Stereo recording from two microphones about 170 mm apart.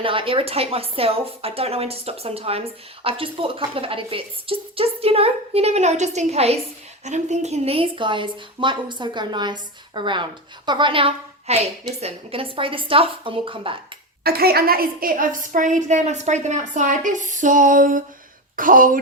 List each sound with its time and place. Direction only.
0.0 s a woman's voice: 30° right (ahead or behind)
14.3 s a woman's voice: 65° right (ahead or behind)